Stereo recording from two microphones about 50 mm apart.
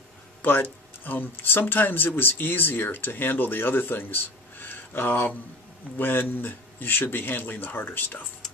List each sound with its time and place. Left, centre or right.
0.4 s speech: left